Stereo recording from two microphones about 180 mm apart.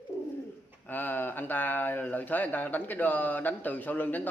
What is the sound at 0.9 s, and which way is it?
Speech, 10° left (ahead or behind).